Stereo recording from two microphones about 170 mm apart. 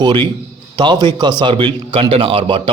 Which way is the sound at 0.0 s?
30° right (ahead or behind).